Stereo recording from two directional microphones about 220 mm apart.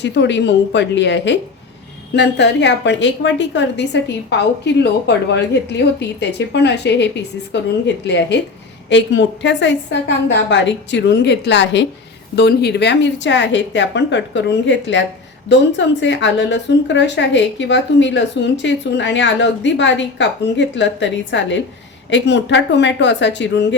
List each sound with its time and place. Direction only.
0.0 s a woman's voice: 50° left (ahead or behind)